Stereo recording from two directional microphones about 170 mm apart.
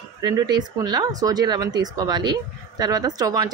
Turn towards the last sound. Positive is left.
turn(degrees=-20)  # may be behind; listen again after turning